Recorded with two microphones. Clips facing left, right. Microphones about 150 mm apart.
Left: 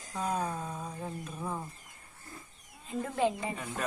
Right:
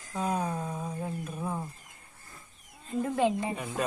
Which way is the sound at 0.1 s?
10° right (ahead or behind).